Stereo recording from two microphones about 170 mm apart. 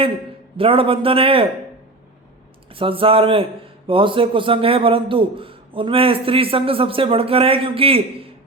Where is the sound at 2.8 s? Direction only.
30° right (ahead or behind).